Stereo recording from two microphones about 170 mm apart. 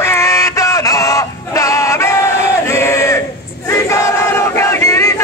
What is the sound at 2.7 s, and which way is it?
Battle cry, 15° left (ahead or behind).